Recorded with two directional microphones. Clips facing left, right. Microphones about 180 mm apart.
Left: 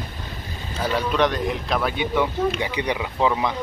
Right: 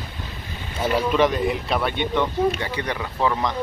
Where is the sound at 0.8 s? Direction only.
5° right (ahead or behind); by 3.5 s 10° left (ahead or behind).